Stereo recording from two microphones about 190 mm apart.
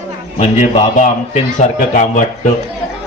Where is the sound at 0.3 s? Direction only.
40° left (ahead or behind).